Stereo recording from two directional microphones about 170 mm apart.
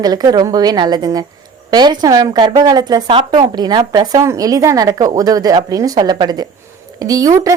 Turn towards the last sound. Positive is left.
turn(degrees=-20)  # may be behind; listen again after turning